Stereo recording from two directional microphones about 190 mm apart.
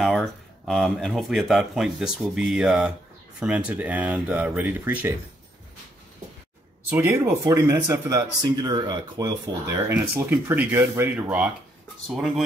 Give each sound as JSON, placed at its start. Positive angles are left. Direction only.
{"t": 0.0, "sound": "speech", "side_deg": 0}
{"t": 6.9, "sound": "speech", "side_deg": -10}
{"t": 9.8, "sound": "speech", "side_deg": -10}